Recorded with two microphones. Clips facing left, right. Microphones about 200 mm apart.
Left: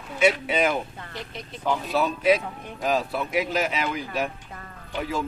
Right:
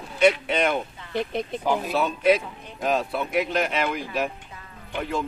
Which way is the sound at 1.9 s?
Centre (ahead or behind).